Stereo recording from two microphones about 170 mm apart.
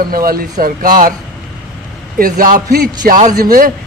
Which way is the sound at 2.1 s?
55° right (ahead or behind).